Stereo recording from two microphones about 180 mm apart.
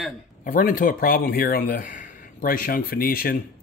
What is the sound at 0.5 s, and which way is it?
Speech, 50° left (ahead or behind).